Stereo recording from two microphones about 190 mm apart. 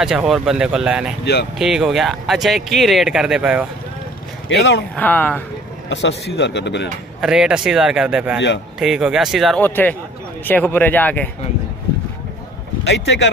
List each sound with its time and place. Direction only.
0.0 s speech: 5° right (ahead or behind)
1.2 s speech: 60° left (ahead or behind)
1.6 s speech: centre (ahead or behind)
4.5 s speech: 65° left (ahead or behind)
4.9 s speech: 10° left (ahead or behind)
5.9 s speech: 70° left (ahead or behind)
7.2 s speech: 5° right (ahead or behind)
9.6 s speech: 10° left (ahead or behind)
12.8 s speech: 70° left (ahead or behind)